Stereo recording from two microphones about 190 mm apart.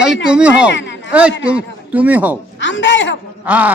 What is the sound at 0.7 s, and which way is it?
Speech, 70° left (ahead or behind).